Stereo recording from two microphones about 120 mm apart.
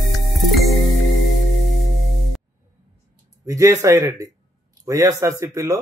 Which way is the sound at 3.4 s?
25° right (ahead or behind).